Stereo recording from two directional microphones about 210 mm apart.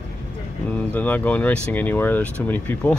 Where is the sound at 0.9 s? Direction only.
10° left (ahead or behind).